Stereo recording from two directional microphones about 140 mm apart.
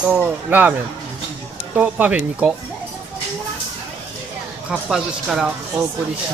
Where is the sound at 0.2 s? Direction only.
10° right (ahead or behind).